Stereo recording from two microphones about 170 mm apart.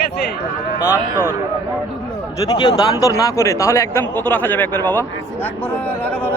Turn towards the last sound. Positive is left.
turn(degrees=10)  # may be behind; listen again after turning